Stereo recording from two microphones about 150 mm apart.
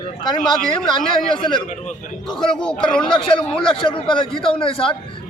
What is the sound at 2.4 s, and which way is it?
Speech, 5° left (ahead or behind).